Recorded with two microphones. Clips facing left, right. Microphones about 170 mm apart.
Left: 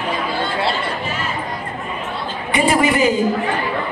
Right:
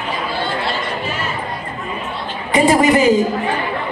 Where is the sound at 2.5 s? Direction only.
40° right (ahead or behind).